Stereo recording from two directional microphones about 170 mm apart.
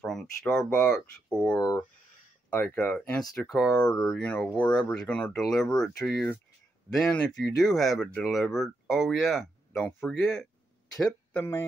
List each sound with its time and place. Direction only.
0.0 s speech: 5° left (ahead or behind)
1.6 s speech: 20° left (ahead or behind)